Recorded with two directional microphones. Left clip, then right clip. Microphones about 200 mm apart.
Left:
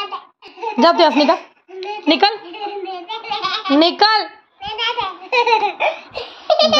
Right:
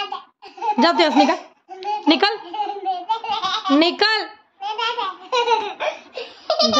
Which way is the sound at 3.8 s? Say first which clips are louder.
Left 6 dB; centre (ahead or behind).